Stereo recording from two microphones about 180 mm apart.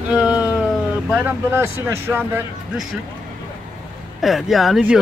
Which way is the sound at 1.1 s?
10° right (ahead or behind).